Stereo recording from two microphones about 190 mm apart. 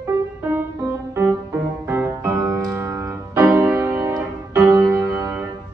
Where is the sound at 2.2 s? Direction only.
15° right (ahead or behind).